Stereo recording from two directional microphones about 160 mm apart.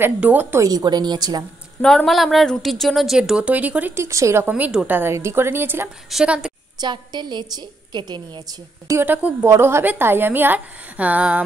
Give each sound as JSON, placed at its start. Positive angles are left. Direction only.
{"t": 0.0, "sound": "a woman's voice", "side_deg": -10}
{"t": 1.8, "sound": "a woman's voice", "side_deg": 5}
{"t": 6.8, "sound": "a woman's voice", "side_deg": -25}